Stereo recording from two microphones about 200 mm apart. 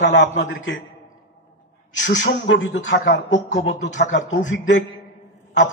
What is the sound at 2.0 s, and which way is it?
Speech, 65° left (ahead or behind).